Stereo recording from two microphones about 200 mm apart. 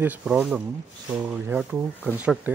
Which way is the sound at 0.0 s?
5° right (ahead or behind).